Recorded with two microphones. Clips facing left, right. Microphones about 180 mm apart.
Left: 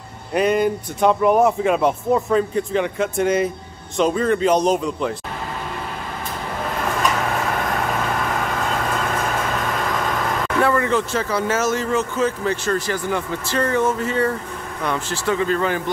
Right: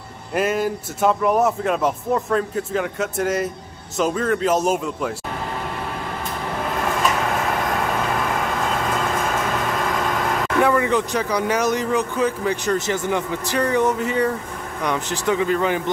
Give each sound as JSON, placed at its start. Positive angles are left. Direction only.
{"t": 0.3, "sound": "speech", "side_deg": -5}
{"t": 10.6, "sound": "speech", "side_deg": -15}